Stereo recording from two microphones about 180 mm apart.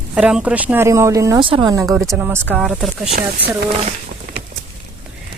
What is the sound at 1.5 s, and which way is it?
Speech, 30° right (ahead or behind).